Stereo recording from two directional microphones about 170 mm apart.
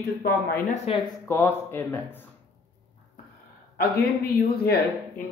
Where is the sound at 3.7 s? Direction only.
65° left (ahead or behind).